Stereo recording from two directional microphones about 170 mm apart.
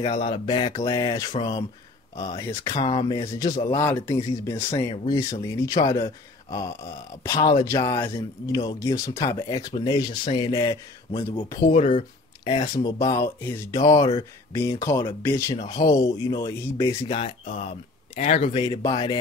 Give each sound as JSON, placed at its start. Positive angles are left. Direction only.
{"t": 0.0, "sound": "speech", "side_deg": 40}
{"t": 0.5, "sound": "speech", "side_deg": 30}
{"t": 12.7, "sound": "speech", "side_deg": 20}
{"t": 17.1, "sound": "speech", "side_deg": 30}
{"t": 18.2, "sound": "speech", "side_deg": 45}
{"t": 18.5, "sound": "speech", "side_deg": 25}